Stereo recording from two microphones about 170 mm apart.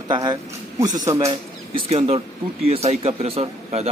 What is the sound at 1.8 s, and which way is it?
Speech, 40° right (ahead or behind).